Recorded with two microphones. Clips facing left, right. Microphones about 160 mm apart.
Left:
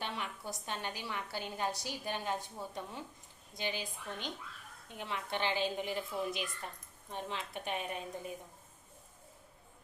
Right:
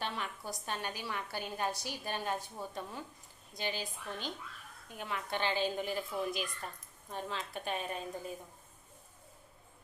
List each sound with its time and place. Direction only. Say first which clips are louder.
0.0 s a woman's voice: right 1 dB; 15° left (ahead or behind)